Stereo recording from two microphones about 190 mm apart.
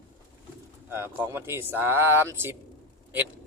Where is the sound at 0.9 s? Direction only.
15° right (ahead or behind).